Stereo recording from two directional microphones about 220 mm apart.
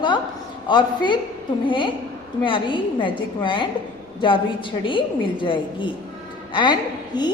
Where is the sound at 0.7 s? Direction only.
20° left (ahead or behind).